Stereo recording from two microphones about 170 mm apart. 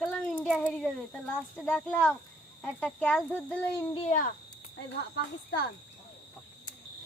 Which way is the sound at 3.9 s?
35° left (ahead or behind).